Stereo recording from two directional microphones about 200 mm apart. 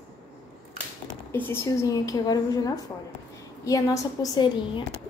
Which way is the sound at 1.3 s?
10° left (ahead or behind).